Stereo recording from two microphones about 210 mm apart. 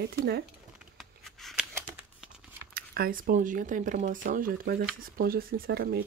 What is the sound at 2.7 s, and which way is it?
Speech, 45° right (ahead or behind).